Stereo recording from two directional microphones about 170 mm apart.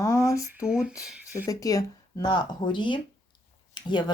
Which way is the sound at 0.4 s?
5° right (ahead or behind).